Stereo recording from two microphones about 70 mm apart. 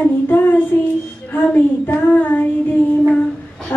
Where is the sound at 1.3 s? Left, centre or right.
Left.